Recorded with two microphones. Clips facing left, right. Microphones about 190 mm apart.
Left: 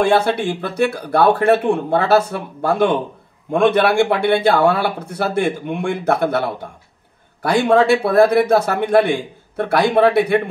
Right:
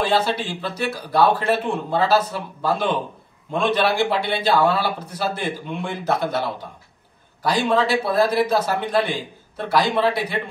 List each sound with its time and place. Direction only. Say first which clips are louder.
0.0 s speech: left 5 dB; 55° left (ahead or behind)